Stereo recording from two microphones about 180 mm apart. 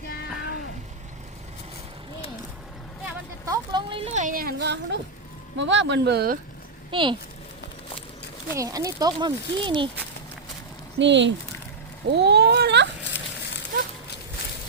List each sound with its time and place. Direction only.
3.4 s a sound: 20° right (ahead or behind); by 4.9 s 70° right (ahead or behind)
5.5 s speech: 90° right; by 6.4 s 60° right (ahead or behind)
6.9 s speech: 25° right (ahead or behind)
8.5 s speech: 20° right (ahead or behind)
10.9 s speech: 80° right
12.1 s speech: 70° right (ahead or behind)
13.1 s a sound: 75° left (ahead or behind)